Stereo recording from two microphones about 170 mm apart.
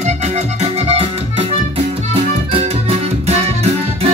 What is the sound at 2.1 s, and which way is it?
Music, 35° right (ahead or behind).